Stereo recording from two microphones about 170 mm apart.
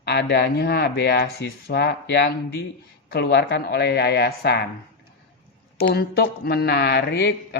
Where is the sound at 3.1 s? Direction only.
85° left.